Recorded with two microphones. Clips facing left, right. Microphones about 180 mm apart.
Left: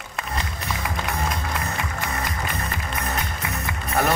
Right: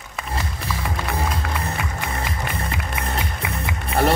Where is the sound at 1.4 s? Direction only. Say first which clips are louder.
Right 1 dB; 65° right (ahead or behind).